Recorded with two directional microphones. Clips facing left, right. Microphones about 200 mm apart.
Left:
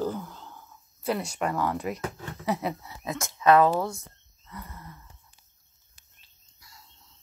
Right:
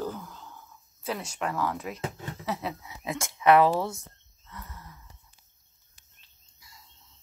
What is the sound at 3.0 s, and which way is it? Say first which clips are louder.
Speech: even; 25° right (ahead or behind).